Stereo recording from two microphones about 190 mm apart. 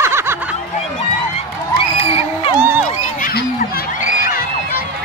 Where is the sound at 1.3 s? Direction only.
30° left (ahead or behind).